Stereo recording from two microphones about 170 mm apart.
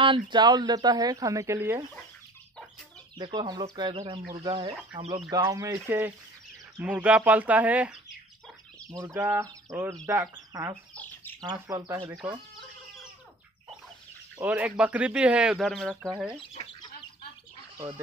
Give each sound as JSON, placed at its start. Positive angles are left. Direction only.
{"t": 0.3, "sound": "speech", "side_deg": -25}
{"t": 3.2, "sound": "speech", "side_deg": -25}
{"t": 14.3, "sound": "speech", "side_deg": -5}
{"t": 16.3, "sound": "speech", "side_deg": 30}
{"t": 17.7, "sound": "speech", "side_deg": -20}